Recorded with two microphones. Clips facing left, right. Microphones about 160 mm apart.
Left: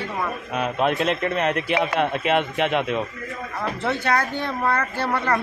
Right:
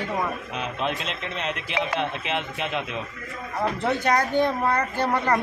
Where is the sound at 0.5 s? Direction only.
55° left (ahead or behind).